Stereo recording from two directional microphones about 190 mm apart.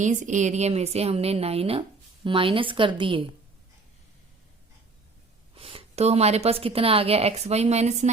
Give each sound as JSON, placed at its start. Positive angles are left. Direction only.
{"t": 0.0, "sound": "a woman's voice", "side_deg": -40}
{"t": 5.5, "sound": "a woman's voice", "side_deg": -30}